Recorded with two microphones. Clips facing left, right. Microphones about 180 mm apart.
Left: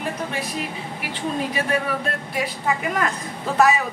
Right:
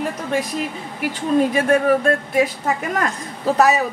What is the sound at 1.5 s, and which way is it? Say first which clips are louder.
Speech: right 8 dB; 50° right (ahead or behind).